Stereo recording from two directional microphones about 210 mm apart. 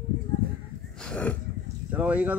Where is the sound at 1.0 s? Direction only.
5° left (ahead or behind).